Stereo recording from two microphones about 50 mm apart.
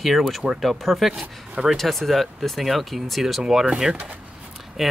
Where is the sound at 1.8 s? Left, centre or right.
Centre.